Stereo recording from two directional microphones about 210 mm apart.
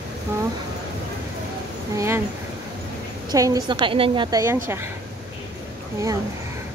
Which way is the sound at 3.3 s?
20° right (ahead or behind).